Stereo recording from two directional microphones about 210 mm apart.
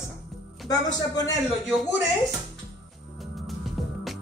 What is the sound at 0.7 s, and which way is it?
Speech, 15° left (ahead or behind).